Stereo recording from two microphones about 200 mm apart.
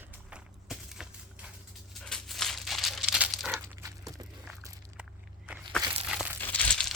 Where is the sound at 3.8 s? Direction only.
15° right (ahead or behind).